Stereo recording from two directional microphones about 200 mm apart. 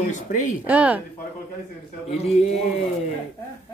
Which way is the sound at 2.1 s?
30° left (ahead or behind).